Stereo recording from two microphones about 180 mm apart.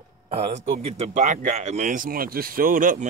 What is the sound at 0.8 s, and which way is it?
Speech, 40° right (ahead or behind).